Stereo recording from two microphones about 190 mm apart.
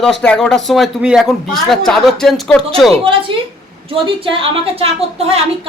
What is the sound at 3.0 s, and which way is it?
A woman's voice, 25° right (ahead or behind).